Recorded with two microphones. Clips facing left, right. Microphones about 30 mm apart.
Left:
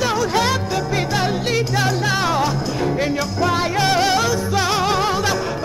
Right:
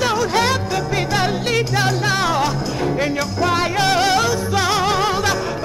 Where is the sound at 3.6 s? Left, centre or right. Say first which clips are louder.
Even; centre.